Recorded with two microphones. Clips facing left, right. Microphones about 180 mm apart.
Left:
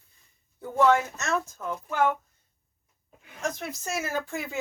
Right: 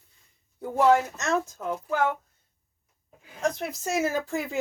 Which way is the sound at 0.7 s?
35° right (ahead or behind).